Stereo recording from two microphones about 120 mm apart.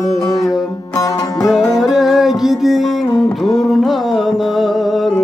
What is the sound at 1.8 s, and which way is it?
Music, 5° right (ahead or behind).